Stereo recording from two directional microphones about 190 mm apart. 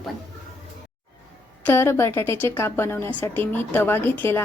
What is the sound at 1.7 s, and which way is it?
Speech, 10° left (ahead or behind).